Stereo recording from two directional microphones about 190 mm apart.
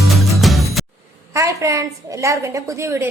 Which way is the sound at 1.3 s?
15° right (ahead or behind).